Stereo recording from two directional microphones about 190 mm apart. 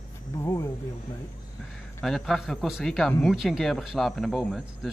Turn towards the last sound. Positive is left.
turn(degrees=0)  # may be behind; listen again after turning